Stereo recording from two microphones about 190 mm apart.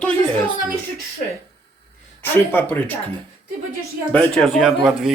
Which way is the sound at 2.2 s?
10° left (ahead or behind).